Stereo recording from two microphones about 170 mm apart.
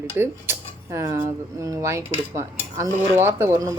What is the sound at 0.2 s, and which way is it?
Speech, 15° right (ahead or behind).